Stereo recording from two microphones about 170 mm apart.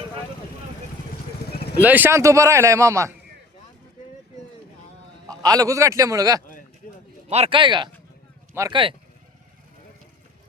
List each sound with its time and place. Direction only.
1.8 s speech: 10° right (ahead or behind)
5.3 s a man's voice: 20° right (ahead or behind)
7.3 s a man's voice: 35° right (ahead or behind)